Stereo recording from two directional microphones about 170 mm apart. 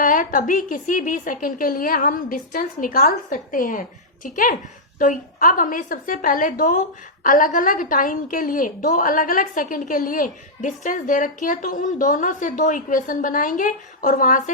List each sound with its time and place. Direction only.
0.0 s a woman's voice: 55° left (ahead or behind)